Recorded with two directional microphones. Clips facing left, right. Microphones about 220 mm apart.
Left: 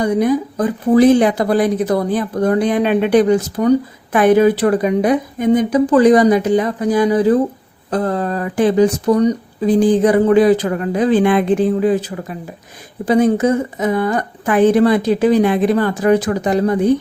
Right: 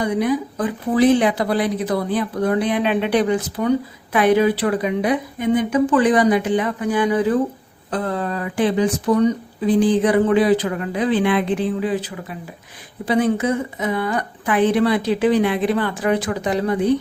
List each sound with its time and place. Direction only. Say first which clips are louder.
0.0 s a woman's voice: left 4 dB; 45° left (ahead or behind)